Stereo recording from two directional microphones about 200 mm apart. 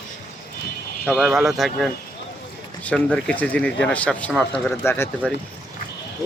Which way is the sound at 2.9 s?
5° left (ahead or behind).